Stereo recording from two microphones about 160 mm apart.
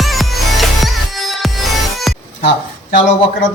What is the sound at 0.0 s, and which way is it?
Music, centre (ahead or behind).